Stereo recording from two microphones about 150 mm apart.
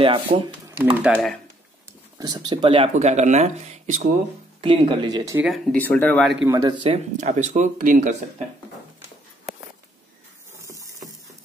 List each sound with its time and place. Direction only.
0.0 s speech: 35° right (ahead or behind)
1.1 s speech: 5° left (ahead or behind)
2.1 s speech: 25° right (ahead or behind)
2.9 s speech: 50° right (ahead or behind)
4.6 s speech: 35° right (ahead or behind)
5.7 s speech: 10° left (ahead or behind)
6.4 s speech: 25° right (ahead or behind)
6.9 s speech: 50° right (ahead or behind)
10.6 s a sound: 20° right (ahead or behind)